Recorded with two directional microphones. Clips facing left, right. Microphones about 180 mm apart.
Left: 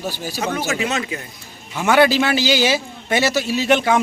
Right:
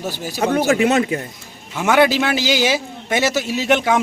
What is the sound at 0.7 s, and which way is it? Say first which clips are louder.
Speech: right 7 dB; 55° right (ahead or behind).